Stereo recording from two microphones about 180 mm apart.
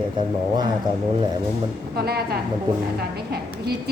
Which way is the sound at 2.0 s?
60° right (ahead or behind).